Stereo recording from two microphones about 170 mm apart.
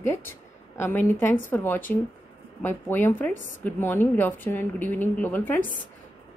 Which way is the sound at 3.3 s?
50° left (ahead or behind).